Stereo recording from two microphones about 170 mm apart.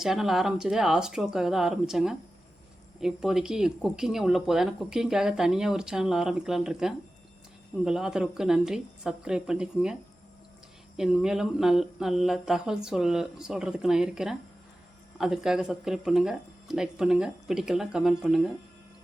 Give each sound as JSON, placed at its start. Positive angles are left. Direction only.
{"t": 0.0, "sound": "speech", "side_deg": 0}